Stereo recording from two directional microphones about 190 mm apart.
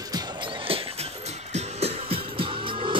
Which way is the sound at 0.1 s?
20° right (ahead or behind).